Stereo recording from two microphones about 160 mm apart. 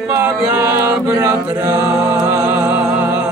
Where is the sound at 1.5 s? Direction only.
20° right (ahead or behind).